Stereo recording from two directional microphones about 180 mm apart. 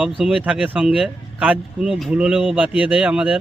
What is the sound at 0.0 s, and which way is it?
Speech, 5° right (ahead or behind).